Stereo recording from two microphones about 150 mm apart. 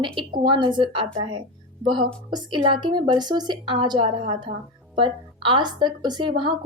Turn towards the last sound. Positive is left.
turn(degrees=-30)  # may be behind; listen again after turning